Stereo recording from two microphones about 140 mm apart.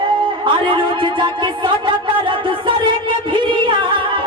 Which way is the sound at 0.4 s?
35° right (ahead or behind).